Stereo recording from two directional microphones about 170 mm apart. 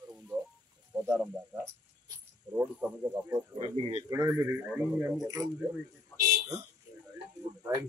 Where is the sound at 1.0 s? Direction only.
10° right (ahead or behind).